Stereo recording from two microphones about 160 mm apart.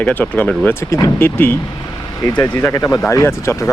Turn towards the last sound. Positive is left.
turn(degrees=15)  # may be behind; listen again after turning